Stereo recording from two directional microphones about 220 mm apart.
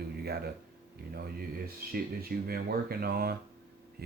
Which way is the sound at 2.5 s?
45° right (ahead or behind).